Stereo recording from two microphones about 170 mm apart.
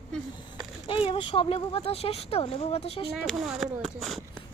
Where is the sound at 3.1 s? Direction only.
Centre (ahead or behind).